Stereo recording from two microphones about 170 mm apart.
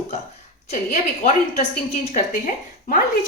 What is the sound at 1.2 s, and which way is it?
Speech, 45° left (ahead or behind).